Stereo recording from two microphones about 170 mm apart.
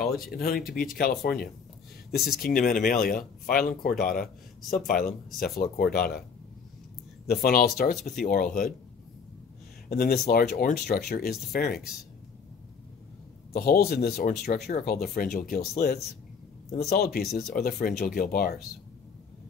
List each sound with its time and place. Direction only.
0.0 s speech: 65° left (ahead or behind)
7.2 s speech: 65° left (ahead or behind)
8.3 s speech: 50° left (ahead or behind)
9.8 s speech: 65° left (ahead or behind)
13.5 s speech: 65° left (ahead or behind)